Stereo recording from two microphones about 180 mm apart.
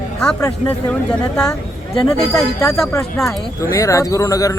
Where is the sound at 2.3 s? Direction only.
20° left (ahead or behind).